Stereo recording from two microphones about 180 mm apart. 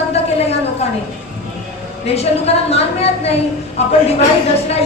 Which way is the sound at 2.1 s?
35° left (ahead or behind).